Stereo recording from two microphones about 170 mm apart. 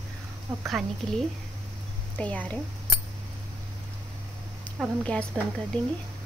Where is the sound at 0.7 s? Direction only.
Centre (ahead or behind).